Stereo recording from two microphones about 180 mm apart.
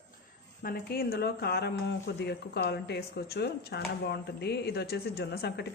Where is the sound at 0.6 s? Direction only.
55° left (ahead or behind).